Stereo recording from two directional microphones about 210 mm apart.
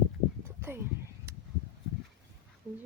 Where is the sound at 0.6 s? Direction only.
10° right (ahead or behind).